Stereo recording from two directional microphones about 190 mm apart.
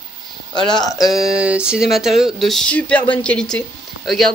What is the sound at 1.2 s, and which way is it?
Speech, 5° right (ahead or behind).